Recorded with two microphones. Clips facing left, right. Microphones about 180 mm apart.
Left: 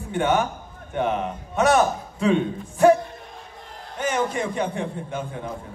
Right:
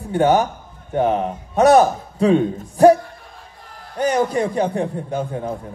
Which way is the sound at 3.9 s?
35° right (ahead or behind).